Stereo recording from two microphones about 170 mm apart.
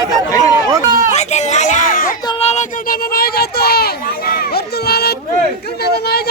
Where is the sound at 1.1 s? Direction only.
40° left (ahead or behind).